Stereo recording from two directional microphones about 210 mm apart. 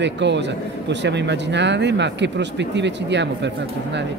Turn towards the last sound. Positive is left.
turn(degrees=-55)  # may be behind; listen again after turning